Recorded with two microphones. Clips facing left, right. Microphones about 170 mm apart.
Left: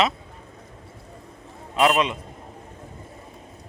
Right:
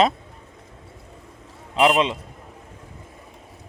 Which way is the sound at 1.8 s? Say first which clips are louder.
Right 2 dB; 25° right (ahead or behind).